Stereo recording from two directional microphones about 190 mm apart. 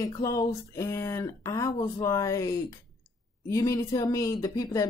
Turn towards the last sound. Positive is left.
turn(degrees=20)  # may be behind; listen again after turning